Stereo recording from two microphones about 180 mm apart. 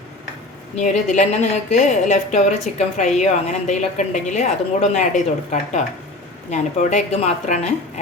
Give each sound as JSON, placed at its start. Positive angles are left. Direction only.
{"t": 0.8, "sound": "a woman's voice", "side_deg": 40}